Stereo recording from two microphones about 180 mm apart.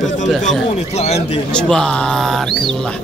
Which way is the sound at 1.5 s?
5° left (ahead or behind).